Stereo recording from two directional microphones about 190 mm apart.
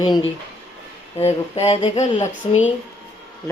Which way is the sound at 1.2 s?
35° left (ahead or behind).